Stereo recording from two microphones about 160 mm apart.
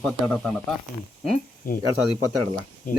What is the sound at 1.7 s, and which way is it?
Speech, 60° left (ahead or behind).